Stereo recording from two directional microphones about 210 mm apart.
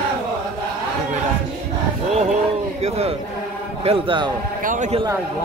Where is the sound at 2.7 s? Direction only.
30° right (ahead or behind).